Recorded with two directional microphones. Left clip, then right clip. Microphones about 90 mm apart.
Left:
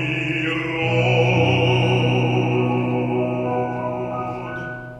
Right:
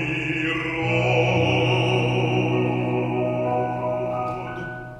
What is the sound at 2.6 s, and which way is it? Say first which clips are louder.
Music: left 2 dB; 35° left (ahead or behind).